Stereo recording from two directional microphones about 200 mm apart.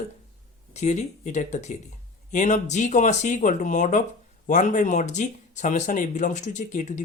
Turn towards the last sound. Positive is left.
turn(degrees=35)  # may be behind; listen again after turning